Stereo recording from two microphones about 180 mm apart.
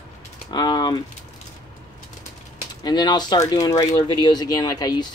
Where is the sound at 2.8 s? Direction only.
25° left (ahead or behind).